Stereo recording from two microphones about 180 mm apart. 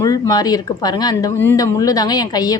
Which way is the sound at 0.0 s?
20° left (ahead or behind).